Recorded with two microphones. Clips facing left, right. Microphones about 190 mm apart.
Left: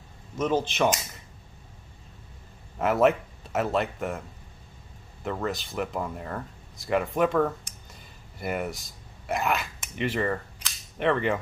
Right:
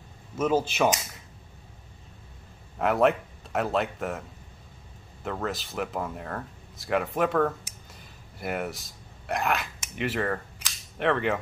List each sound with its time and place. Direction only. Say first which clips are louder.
0.4 s speech: right 1 dB; 10° right (ahead or behind)
2.8 s speech: left 1 dB; centre (ahead or behind)
5.2 s speech: left 1 dB; centre (ahead or behind)
11.0 s cap gun: left 1 dB; centre (ahead or behind)